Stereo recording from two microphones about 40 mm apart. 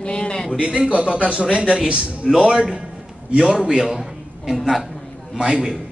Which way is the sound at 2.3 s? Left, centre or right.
Centre.